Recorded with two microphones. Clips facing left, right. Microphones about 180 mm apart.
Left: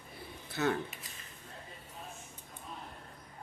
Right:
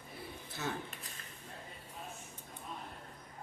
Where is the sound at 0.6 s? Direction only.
65° left (ahead or behind).